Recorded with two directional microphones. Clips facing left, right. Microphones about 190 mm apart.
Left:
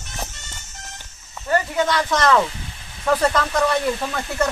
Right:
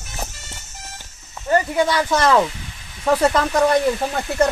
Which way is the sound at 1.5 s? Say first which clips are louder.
Right 2 dB; 10° right (ahead or behind).